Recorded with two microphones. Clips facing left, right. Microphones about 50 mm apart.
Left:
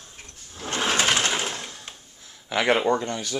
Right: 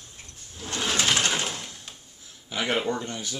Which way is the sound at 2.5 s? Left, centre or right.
Left.